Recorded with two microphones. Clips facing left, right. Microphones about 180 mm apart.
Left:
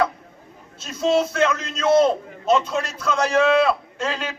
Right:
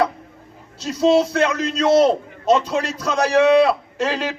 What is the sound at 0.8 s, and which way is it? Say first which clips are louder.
A man's voice: right 4 dB; 35° right (ahead or behind).